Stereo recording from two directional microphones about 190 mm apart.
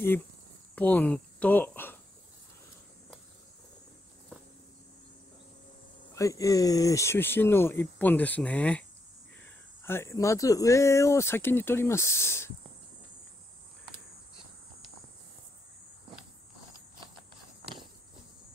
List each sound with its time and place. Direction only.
0.7 s speech: 10° left (ahead or behind)
6.1 s speech: 15° left (ahead or behind)